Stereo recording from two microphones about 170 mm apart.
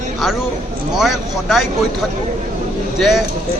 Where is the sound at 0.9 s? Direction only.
Centre (ahead or behind).